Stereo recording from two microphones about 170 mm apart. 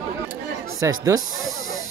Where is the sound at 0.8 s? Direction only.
20° right (ahead or behind).